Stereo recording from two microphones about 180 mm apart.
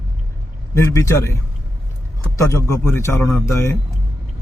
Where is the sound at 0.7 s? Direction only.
15° left (ahead or behind).